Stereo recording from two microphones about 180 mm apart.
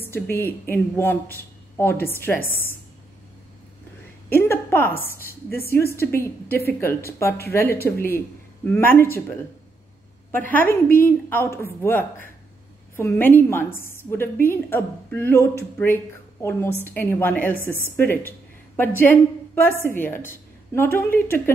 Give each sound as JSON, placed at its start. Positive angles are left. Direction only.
{"t": 0.0, "sound": "a woman's voice", "side_deg": 10}
{"t": 4.3, "sound": "a woman's voice", "side_deg": 15}
{"t": 4.9, "sound": "a woman's voice", "side_deg": 55}
{"t": 5.7, "sound": "a woman's voice", "side_deg": 15}
{"t": 10.3, "sound": "a woman's voice", "side_deg": 10}